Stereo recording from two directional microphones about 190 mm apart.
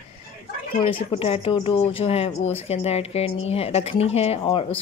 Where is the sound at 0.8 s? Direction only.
30° left (ahead or behind).